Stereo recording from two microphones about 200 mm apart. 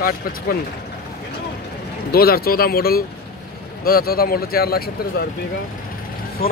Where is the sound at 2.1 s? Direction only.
50° left (ahead or behind).